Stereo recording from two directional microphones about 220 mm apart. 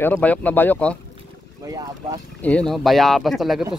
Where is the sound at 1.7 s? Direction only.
15° right (ahead or behind).